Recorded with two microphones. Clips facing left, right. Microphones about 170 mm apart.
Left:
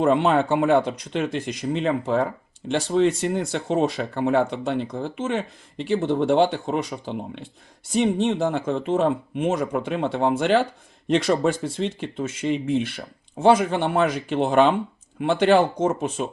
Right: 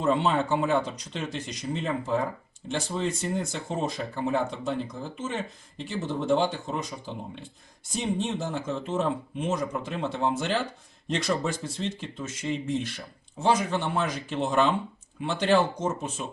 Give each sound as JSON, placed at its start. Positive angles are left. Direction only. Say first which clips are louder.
{"t": 0.0, "sound": "speech", "louder": "left 6 dB", "side_deg": 60}